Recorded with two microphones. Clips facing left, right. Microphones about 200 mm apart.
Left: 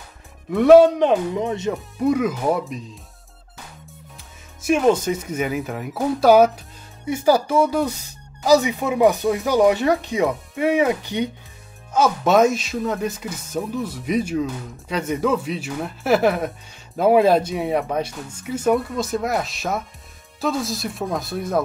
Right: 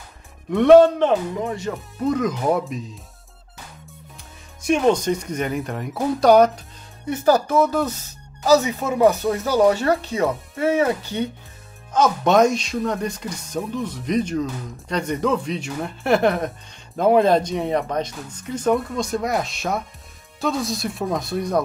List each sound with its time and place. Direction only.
0.5 s speech: 5° left (ahead or behind); by 1.7 s 20° left (ahead or behind)
2.0 s speech: 10° left (ahead or behind)
4.6 s speech: 5° left (ahead or behind)
11.9 s speech: 5° left (ahead or behind)